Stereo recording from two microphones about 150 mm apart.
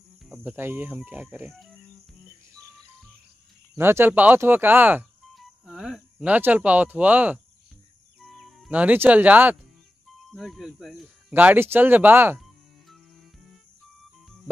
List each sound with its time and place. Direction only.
0.4 s speech: 15° right (ahead or behind)
3.7 s speech: 15° right (ahead or behind)
5.3 s speech: centre (ahead or behind)
8.2 s speech: centre (ahead or behind)
11.3 s speech: 10° right (ahead or behind)